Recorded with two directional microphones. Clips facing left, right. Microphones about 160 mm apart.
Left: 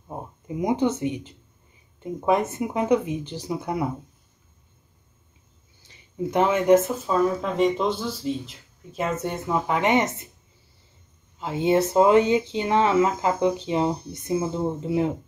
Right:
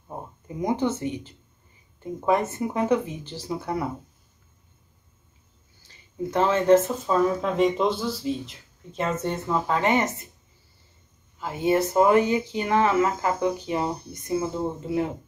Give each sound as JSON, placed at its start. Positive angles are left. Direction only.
{"t": 0.1, "sound": "speech", "side_deg": 20}
{"t": 5.9, "sound": "speech", "side_deg": 15}
{"t": 11.3, "sound": "speech", "side_deg": 20}